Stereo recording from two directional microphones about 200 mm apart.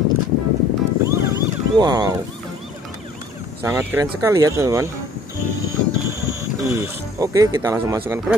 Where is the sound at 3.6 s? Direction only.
10° right (ahead or behind).